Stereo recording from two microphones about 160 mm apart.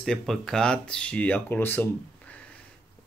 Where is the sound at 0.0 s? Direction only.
Centre (ahead or behind).